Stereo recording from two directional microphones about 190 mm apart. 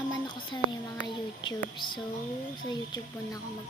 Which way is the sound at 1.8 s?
25° left (ahead or behind).